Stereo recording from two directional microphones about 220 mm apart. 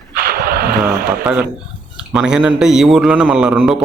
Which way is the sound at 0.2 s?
45° right (ahead or behind).